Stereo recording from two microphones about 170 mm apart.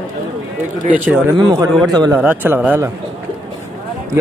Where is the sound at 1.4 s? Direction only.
20° right (ahead or behind).